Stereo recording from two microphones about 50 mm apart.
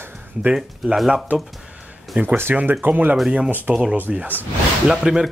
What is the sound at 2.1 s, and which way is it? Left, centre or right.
Speech, right.